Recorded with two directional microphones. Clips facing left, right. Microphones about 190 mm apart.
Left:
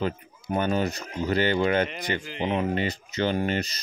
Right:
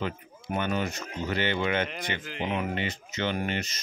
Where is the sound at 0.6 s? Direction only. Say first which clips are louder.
Left 4 dB; 35° left (ahead or behind).